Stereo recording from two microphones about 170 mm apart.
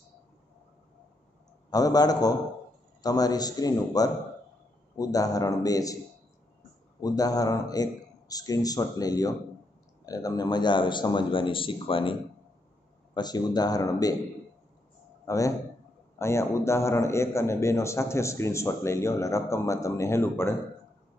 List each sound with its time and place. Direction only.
1.7 s a man's voice: 20° left (ahead or behind)
7.0 s a man's voice: 20° left (ahead or behind)
15.2 s a man's voice: 20° left (ahead or behind)